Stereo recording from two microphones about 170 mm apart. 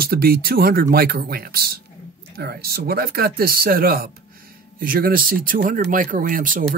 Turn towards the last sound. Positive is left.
turn(degrees=-50)  # may be behind; listen again after turning